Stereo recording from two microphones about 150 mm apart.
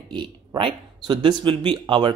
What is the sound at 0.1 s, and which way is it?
Speech, 30° right (ahead or behind).